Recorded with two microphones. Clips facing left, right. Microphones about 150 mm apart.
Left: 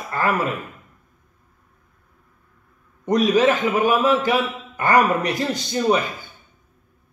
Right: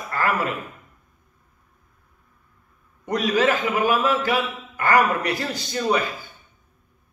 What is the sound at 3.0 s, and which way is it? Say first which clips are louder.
A man's voice: left 4 dB; 20° left (ahead or behind).